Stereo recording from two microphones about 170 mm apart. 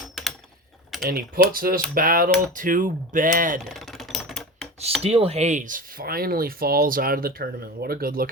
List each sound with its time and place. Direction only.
1.0 s speech: 60° right (ahead or behind)
3.6 s typewriter: centre (ahead or behind)
5.0 s speech: 35° right (ahead or behind); by 8.3 s 60° right (ahead or behind)